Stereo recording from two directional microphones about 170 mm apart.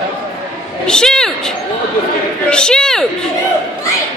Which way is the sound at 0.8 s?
5° left (ahead or behind).